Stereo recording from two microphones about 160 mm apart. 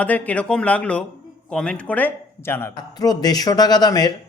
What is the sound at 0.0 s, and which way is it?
Speech, 10° left (ahead or behind).